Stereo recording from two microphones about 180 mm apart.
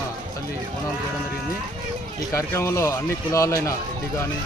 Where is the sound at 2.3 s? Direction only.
15° left (ahead or behind).